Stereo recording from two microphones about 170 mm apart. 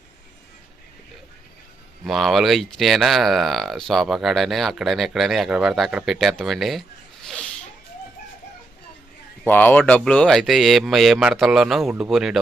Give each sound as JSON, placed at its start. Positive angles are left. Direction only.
{"t": 2.0, "sound": "speech", "side_deg": 0}
{"t": 7.3, "sound": "a sound", "side_deg": 5}
{"t": 9.5, "sound": "speech", "side_deg": 10}